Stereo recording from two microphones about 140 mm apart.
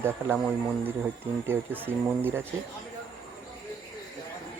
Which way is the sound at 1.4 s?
15° right (ahead or behind).